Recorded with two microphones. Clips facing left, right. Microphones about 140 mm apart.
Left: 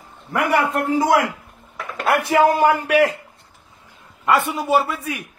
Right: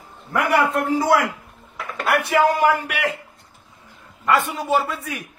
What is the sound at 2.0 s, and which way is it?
Speech, 25° left (ahead or behind).